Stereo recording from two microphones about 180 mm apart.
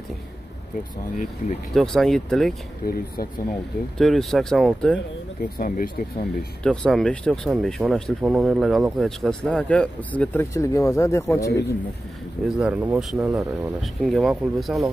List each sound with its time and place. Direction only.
1.1 s speech: 45° left (ahead or behind)
1.7 s speech: centre (ahead or behind)
2.8 s speech: 55° left (ahead or behind)
4.0 s speech: centre (ahead or behind)
5.4 s speech: 55° left (ahead or behind)
6.6 s speech: 5° left (ahead or behind)
12.4 s speech: 5° right (ahead or behind)